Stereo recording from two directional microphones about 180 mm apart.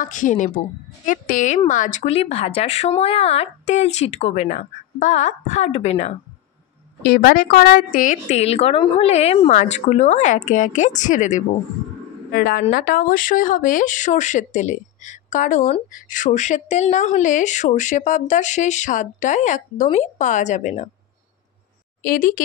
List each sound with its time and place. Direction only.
0.0 s speech: 45° left (ahead or behind)
7.0 s speech: 60° left (ahead or behind); by 11.4 s 45° left (ahead or behind)
12.3 s speech: 55° left (ahead or behind); by 20.9 s 40° left (ahead or behind)
22.0 s speech: 50° left (ahead or behind)